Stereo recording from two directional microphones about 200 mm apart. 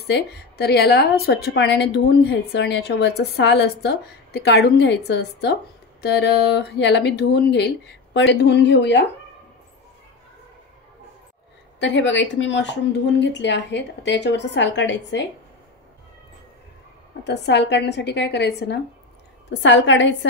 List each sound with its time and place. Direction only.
0.1 s a woman's voice: 55° left (ahead or behind)
11.8 s a woman's voice: 65° left (ahead or behind)
17.2 s a woman's voice: 60° left (ahead or behind)